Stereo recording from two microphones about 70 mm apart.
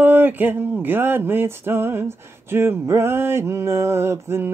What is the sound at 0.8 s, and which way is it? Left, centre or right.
Male singing, right.